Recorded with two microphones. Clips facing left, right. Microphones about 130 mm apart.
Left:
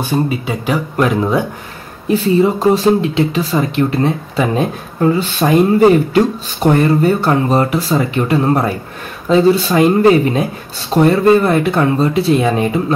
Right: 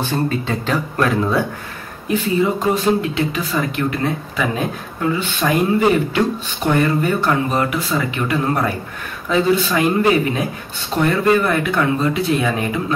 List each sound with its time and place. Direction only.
0.0 s speech: 10° left (ahead or behind)
2.0 s speech: 35° left (ahead or behind)